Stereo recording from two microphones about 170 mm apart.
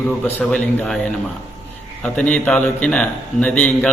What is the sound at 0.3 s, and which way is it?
Speech, 10° left (ahead or behind).